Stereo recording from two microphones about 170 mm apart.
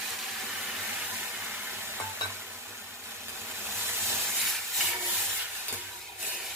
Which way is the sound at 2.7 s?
15° right (ahead or behind).